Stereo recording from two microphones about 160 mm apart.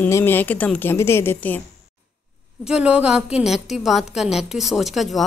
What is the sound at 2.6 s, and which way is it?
A woman's voice, 5° right (ahead or behind).